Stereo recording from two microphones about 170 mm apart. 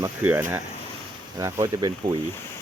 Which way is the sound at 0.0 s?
15° right (ahead or behind).